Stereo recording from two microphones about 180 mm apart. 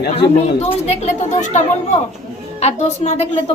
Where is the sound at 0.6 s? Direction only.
40° left (ahead or behind).